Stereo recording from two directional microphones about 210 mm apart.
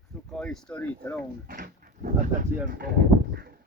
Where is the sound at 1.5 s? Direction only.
45° right (ahead or behind).